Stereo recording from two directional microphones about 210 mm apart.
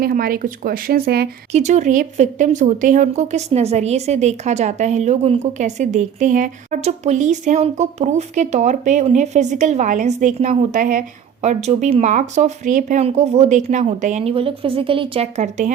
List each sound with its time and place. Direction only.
0.0 s speech: 45° right (ahead or behind)
1.5 s speech: 35° right (ahead or behind)